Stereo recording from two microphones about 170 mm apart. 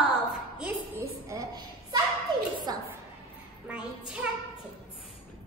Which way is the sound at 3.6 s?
5° right (ahead or behind).